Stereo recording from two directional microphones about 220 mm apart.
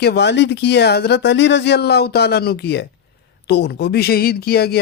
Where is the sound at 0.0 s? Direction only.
50° left (ahead or behind).